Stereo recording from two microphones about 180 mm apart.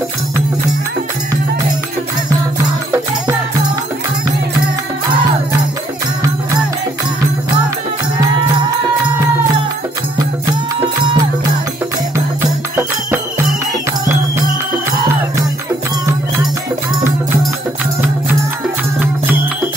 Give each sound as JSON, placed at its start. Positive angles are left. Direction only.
{"t": 8.2, "sound": "music", "side_deg": -25}
{"t": 10.8, "sound": "music", "side_deg": -25}